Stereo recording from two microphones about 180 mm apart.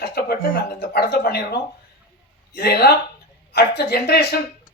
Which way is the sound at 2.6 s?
65° left (ahead or behind).